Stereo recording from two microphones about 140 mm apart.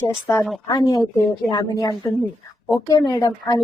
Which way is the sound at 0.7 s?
30° left (ahead or behind).